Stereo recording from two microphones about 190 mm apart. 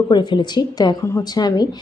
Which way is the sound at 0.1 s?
25° left (ahead or behind).